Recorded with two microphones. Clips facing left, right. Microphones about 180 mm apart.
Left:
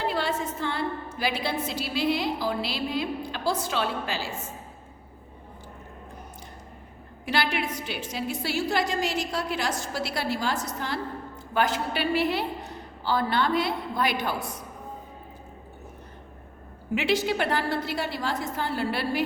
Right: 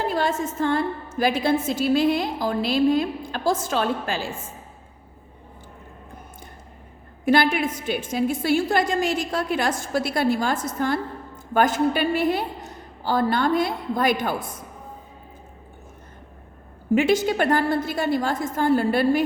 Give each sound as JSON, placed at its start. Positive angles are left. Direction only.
{"t": 0.0, "sound": "a woman's voice", "side_deg": -45}
{"t": 7.3, "sound": "a woman's voice", "side_deg": -50}
{"t": 16.9, "sound": "a woman's voice", "side_deg": -45}